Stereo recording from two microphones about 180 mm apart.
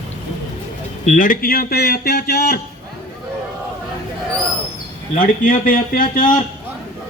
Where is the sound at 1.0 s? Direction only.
45° left (ahead or behind); by 2.6 s 60° left (ahead or behind).